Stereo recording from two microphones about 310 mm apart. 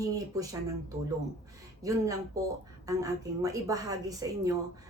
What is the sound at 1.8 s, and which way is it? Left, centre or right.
Speech, centre.